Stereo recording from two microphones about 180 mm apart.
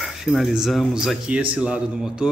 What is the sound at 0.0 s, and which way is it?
A man's voice, centre (ahead or behind).